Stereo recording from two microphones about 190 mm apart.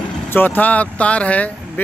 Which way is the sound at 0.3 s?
10° left (ahead or behind).